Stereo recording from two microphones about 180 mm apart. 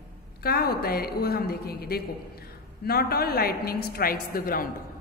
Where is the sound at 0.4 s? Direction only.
60° left (ahead or behind).